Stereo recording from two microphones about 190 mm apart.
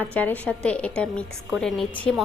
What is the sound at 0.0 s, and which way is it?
A woman's voice, 10° left (ahead or behind).